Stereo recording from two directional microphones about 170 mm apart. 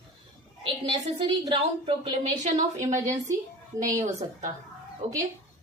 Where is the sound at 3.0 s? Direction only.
20° right (ahead or behind).